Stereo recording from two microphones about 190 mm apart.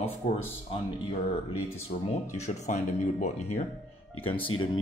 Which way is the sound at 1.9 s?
40° left (ahead or behind).